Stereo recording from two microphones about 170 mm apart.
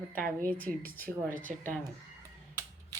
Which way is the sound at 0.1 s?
55° right (ahead or behind).